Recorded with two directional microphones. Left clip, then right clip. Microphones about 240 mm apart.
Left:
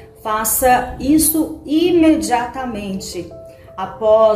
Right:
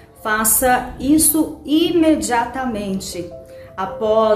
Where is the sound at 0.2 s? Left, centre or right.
Centre.